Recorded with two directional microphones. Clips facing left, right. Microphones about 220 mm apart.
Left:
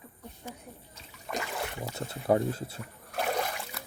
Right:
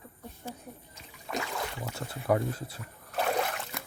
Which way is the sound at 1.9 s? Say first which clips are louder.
Left 2 dB; 25° left (ahead or behind).